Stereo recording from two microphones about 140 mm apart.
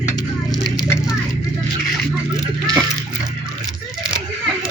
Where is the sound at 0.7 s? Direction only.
5° right (ahead or behind).